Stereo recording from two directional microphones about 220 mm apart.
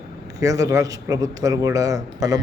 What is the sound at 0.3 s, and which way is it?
A man's voice, 15° right (ahead or behind).